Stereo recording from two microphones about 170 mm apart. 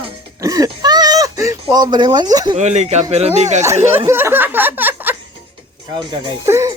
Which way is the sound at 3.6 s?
15° right (ahead or behind).